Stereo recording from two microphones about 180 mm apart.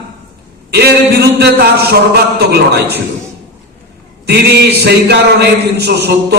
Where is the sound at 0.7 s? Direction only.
65° right (ahead or behind).